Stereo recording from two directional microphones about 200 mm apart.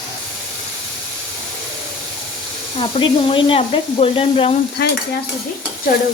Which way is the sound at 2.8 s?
25° left (ahead or behind).